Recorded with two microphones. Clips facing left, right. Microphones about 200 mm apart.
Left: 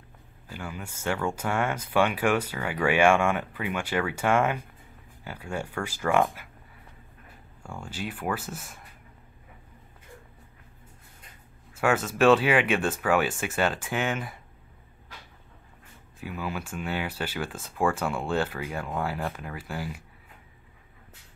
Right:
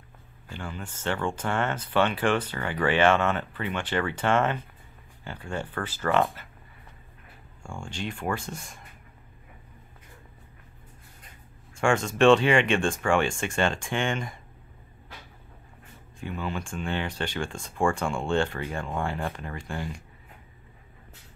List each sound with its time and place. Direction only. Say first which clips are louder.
0.5 s speech: even; 10° left (ahead or behind)
7.6 s speech: right 1 dB; 5° left (ahead or behind)
11.8 s speech: right 1 dB; 5° left (ahead or behind)
16.2 s speech: right 1 dB; 5° left (ahead or behind)